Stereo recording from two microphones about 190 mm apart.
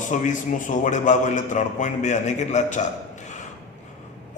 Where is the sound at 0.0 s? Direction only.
40° left (ahead or behind).